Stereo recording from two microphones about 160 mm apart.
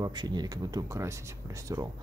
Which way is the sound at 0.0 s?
25° right (ahead or behind).